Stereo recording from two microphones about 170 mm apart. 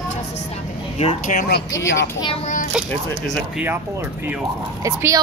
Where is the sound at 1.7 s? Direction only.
20° left (ahead or behind).